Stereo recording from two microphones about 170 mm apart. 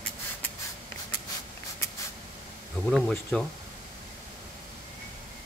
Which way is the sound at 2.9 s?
5° left (ahead or behind).